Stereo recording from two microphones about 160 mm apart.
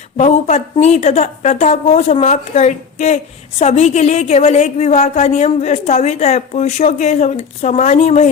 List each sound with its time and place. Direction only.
0.2 s a woman's voice: 45° left (ahead or behind)